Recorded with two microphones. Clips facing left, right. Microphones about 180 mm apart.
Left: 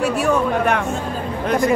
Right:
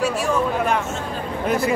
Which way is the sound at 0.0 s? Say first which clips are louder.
Left 3 dB; 60° left (ahead or behind).